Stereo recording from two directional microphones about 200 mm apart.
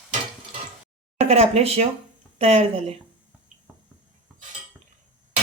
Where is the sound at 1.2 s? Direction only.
30° right (ahead or behind).